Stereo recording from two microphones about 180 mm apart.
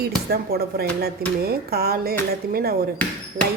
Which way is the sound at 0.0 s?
60° right (ahead or behind).